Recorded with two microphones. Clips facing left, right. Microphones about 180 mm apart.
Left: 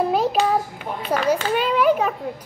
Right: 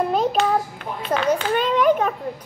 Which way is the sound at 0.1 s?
5° left (ahead or behind).